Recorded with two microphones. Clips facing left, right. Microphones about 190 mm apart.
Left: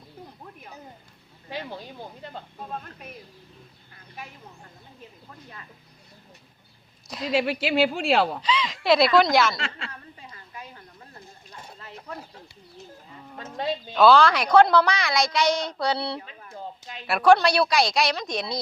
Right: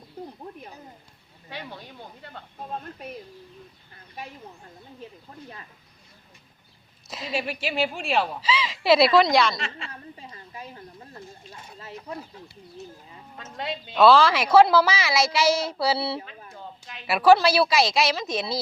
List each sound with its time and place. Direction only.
7.1 s a woman's voice: centre (ahead or behind)
7.6 s speech: 75° left (ahead or behind)
8.4 s a woman's voice: 5° right (ahead or behind)
9.9 s a sound: 25° right (ahead or behind)
13.3 s speech: 45° left (ahead or behind)
13.9 s a woman's voice: centre (ahead or behind)